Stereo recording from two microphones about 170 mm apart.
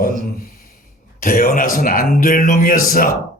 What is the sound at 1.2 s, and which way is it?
A man's voice, 55° left (ahead or behind).